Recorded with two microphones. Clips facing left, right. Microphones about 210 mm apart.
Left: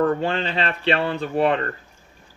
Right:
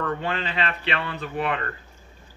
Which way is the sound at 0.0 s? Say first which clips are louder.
Left 7 dB; 35° left (ahead or behind).